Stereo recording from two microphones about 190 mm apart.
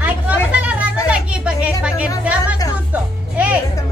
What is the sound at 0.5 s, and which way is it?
Children playing, 5° right (ahead or behind).